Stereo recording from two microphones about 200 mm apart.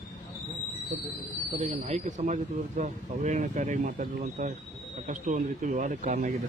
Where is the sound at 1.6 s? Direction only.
35° right (ahead or behind).